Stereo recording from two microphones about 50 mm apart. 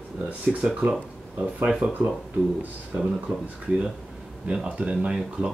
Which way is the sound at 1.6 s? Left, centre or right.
Centre.